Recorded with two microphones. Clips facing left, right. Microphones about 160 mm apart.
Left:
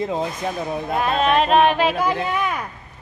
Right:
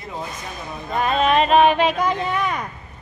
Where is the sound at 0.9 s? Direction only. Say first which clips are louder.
Right 1 dB; centre (ahead or behind).